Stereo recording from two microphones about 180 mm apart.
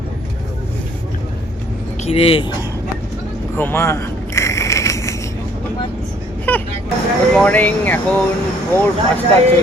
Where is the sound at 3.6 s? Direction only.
15° left (ahead or behind).